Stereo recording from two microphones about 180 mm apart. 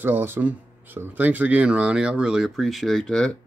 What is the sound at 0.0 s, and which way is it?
Speech, 10° right (ahead or behind).